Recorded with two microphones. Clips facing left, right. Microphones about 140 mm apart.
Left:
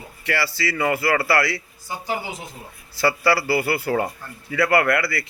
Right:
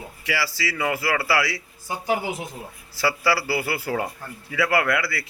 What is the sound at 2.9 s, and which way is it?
A man's voice, 10° right (ahead or behind).